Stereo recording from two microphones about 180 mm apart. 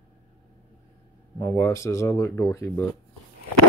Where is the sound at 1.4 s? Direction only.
15° left (ahead or behind).